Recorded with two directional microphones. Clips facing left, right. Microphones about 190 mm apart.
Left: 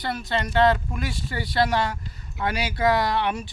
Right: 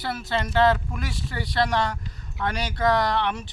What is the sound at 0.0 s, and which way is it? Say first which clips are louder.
Speech: left 1 dB; 5° right (ahead or behind).